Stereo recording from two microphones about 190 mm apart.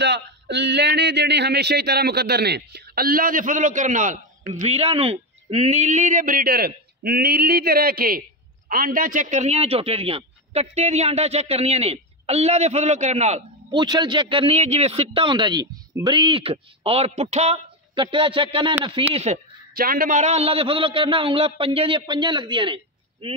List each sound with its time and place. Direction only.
0.0 s a man's voice: 65° right (ahead or behind); by 13.4 s 35° right (ahead or behind)
13.7 s a man's voice: 25° right (ahead or behind)
19.7 s a man's voice: 50° right (ahead or behind); by 23.4 s 30° right (ahead or behind)